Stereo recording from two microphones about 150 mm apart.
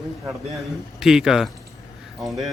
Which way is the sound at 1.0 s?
5° right (ahead or behind).